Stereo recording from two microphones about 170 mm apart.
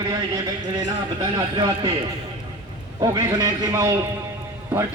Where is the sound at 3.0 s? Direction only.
20° right (ahead or behind).